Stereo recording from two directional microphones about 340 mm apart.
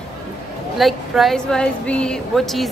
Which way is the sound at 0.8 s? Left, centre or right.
Centre.